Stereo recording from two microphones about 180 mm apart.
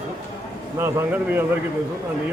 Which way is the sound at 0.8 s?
10° right (ahead or behind).